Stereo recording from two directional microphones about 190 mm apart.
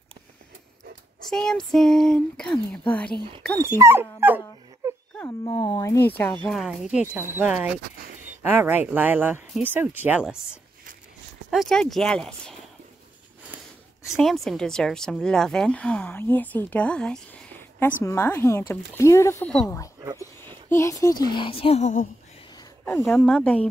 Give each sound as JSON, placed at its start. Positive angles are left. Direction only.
{"t": 1.3, "sound": "speech", "side_deg": 5}
{"t": 3.5, "sound": "speech", "side_deg": -15}
{"t": 4.8, "sound": "a sound", "side_deg": -15}
{"t": 5.5, "sound": "speech", "side_deg": 20}
{"t": 6.0, "sound": "speech", "side_deg": 10}
{"t": 14.0, "sound": "a woman's voice", "side_deg": 0}
{"t": 22.8, "sound": "speech", "side_deg": 5}